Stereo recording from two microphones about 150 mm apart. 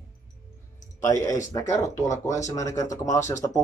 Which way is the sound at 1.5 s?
20° left (ahead or behind).